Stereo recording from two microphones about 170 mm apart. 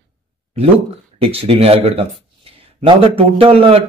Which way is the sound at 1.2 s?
35° right (ahead or behind).